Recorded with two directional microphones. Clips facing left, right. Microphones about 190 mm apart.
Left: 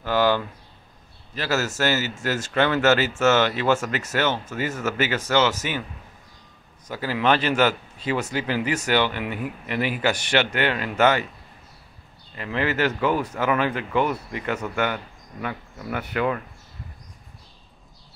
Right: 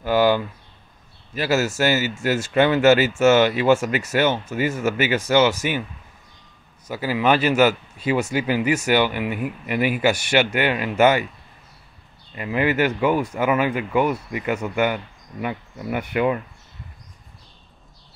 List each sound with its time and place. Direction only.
0.0 s speech: 10° right (ahead or behind)
6.9 s speech: 10° right (ahead or behind)
12.4 s speech: 15° right (ahead or behind)